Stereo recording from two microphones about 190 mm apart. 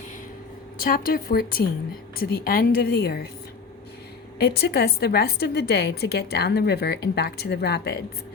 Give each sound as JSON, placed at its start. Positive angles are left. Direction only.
{"t": 0.8, "sound": "a woman's voice", "side_deg": 50}
{"t": 4.4, "sound": "a woman's voice", "side_deg": 55}